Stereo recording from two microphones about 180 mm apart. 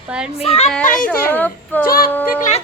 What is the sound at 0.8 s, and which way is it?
Speech, 45° left (ahead or behind).